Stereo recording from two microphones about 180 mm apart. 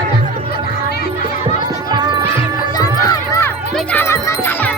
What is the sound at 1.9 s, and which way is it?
Music, 25° right (ahead or behind).